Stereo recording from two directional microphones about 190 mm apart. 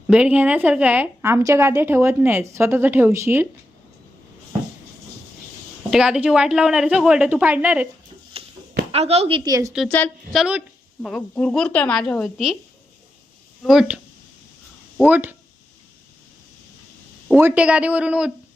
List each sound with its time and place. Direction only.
0.1 s a woman's voice: 5° right (ahead or behind)
5.9 s a woman's voice: 5° right (ahead or behind)
8.4 s a sound: 30° right (ahead or behind)
8.9 s a woman's voice: 30° right (ahead or behind); by 9.7 s 15° right (ahead or behind)
9.9 s a woman's voice: 10° left (ahead or behind)
13.7 s a woman's voice: 5° right (ahead or behind)
17.2 s a woman's voice: 5° right (ahead or behind)